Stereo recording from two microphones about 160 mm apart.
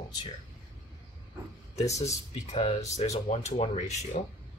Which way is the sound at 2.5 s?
40° left (ahead or behind).